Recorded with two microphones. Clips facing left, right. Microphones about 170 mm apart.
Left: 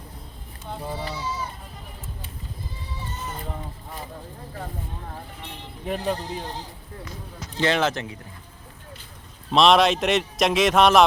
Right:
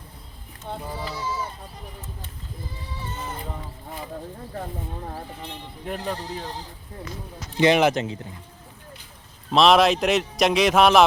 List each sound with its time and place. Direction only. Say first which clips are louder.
5.8 s speech: left 3 dB; 15° left (ahead or behind)
7.5 s speech: right 5 dB; 15° right (ahead or behind)
9.5 s speech: right 1 dB; centre (ahead or behind)